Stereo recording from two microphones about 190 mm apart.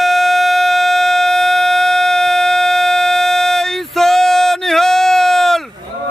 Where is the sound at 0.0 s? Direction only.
Centre (ahead or behind).